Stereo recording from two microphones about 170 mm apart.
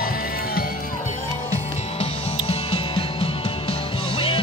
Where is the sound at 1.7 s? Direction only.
35° left (ahead or behind).